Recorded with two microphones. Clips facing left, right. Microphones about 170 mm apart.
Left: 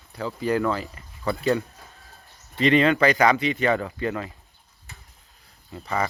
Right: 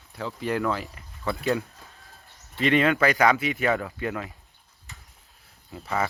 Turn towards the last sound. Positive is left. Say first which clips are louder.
# left 1 dB
turn(degrees=0)  # may be behind; listen again after turning